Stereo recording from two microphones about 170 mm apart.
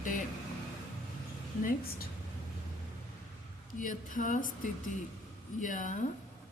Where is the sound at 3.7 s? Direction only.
50° left (ahead or behind).